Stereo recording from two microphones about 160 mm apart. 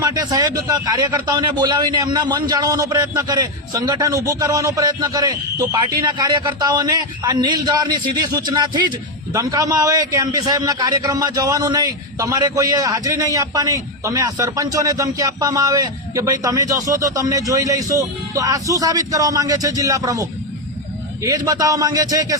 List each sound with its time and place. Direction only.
0.0 s a man's voice: 25° right (ahead or behind)
21.2 s a man's voice: 20° right (ahead or behind)